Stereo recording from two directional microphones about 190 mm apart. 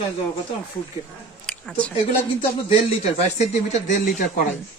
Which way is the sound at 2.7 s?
35° left (ahead or behind).